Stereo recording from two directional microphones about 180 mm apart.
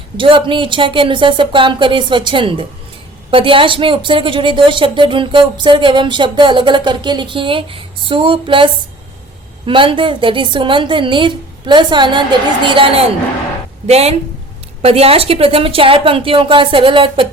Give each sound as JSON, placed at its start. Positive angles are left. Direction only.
{"t": 0.2, "sound": "a woman's voice", "side_deg": -30}